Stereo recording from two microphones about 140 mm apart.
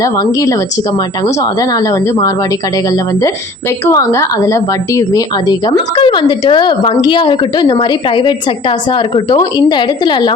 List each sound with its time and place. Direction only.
0.0 s speech: 25° left (ahead or behind)